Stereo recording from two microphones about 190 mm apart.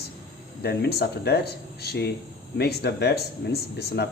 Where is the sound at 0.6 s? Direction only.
60° left (ahead or behind).